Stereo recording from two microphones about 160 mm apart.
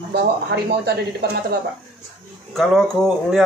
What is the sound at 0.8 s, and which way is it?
Speech, 90° right.